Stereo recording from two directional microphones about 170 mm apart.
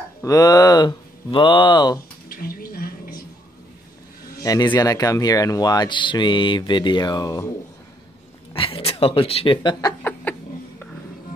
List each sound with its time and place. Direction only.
0.2 s speech: 20° left (ahead or behind)
2.2 s a sound: 60° left (ahead or behind)
4.4 s a man's voice: 20° left (ahead or behind)
8.5 s speech: 35° left (ahead or behind)